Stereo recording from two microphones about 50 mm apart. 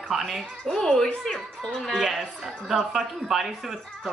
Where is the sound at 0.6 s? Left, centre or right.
Centre.